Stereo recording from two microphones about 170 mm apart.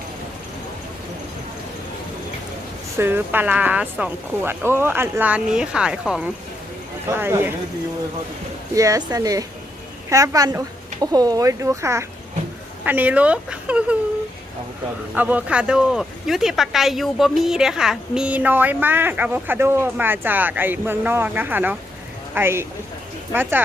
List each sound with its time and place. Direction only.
3.0 s speech: 10° right (ahead or behind)
8.7 s speech: 20° right (ahead or behind)
15.1 s speech: 10° right (ahead or behind)